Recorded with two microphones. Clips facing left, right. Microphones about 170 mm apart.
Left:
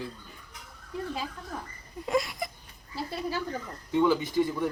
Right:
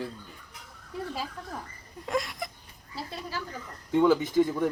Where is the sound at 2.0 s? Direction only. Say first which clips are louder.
Left 2 dB; 5° left (ahead or behind).